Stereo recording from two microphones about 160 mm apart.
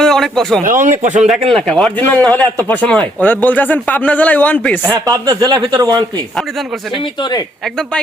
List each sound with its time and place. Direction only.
0.0 s a sound: 5° left (ahead or behind)
0.6 s speech: 55° right (ahead or behind)
1.5 s speech: 5° left (ahead or behind)
5.0 s a man's voice: 20° right (ahead or behind)
7.0 s speech: 25° left (ahead or behind)